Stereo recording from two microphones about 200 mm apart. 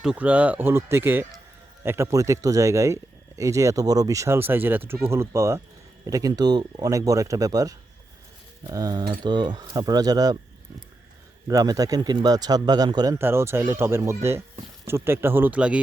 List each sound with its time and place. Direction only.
0.0 s speech: 5° right (ahead or behind)
11.4 s speech: 15° right (ahead or behind)